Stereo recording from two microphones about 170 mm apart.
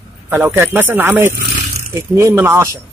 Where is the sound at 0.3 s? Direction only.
15° right (ahead or behind).